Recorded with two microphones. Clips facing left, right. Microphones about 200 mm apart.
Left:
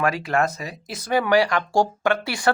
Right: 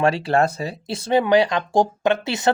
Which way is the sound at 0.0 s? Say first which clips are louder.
Right 4 dB; 30° right (ahead or behind).